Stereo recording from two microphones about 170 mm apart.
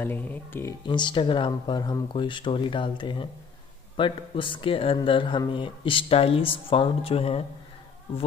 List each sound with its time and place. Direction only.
0.0 s speech: 10° left (ahead or behind)
0.8 s speech: 25° left (ahead or behind)